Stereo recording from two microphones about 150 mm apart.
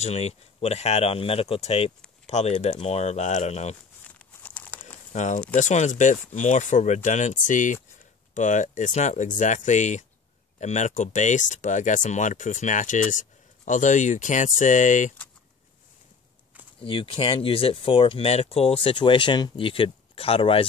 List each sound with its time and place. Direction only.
0.0 s speech: 45° left (ahead or behind)
4.4 s crumpling: 10° left (ahead or behind)
5.1 s speech: 55° left (ahead or behind)
16.8 s speech: 35° left (ahead or behind)